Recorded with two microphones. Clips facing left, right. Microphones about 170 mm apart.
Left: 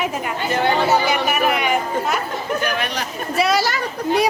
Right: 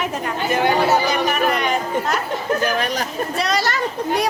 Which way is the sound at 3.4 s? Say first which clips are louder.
Left 4 dB; 5° left (ahead or behind).